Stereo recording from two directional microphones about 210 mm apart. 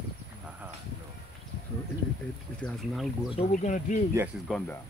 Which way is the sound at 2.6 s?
Centre (ahead or behind).